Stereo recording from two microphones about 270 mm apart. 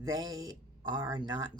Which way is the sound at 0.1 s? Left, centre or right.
Centre.